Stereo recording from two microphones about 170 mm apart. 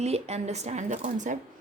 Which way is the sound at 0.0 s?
40° right (ahead or behind).